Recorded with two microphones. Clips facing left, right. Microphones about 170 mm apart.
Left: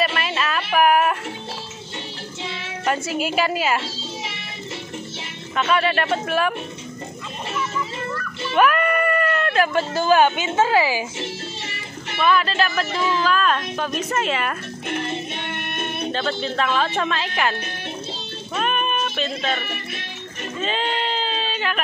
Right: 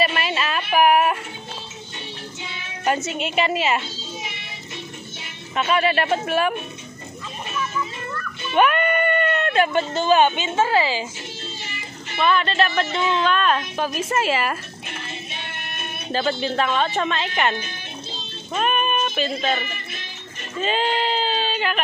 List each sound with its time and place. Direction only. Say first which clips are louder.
0.0 s a sound: even; centre (ahead or behind)
3.1 s a woman's voice: left 1 dB; 5° left (ahead or behind)
5.6 s a woman's voice: even; 5° right (ahead or behind)
8.5 s music: even; centre (ahead or behind)
10.0 s a woman's voice: left 1 dB; 5° left (ahead or behind)
12.2 s a woman's voice: even; centre (ahead or behind)
14.9 s music: left 10 dB; 50° left (ahead or behind)
16.1 s a woman's voice: right 5 dB; 5° right (ahead or behind)
18.6 s music: right 1 dB; 5° right (ahead or behind)
20.6 s a sound: right 3 dB; centre (ahead or behind)